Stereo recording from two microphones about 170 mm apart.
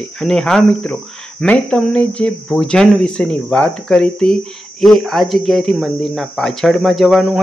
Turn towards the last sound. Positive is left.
turn(degrees=-5)  # may be behind; listen again after turning